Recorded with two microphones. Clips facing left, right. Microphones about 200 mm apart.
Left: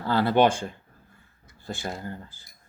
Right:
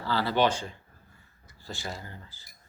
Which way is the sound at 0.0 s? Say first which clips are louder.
Left 5 dB; 55° left (ahead or behind).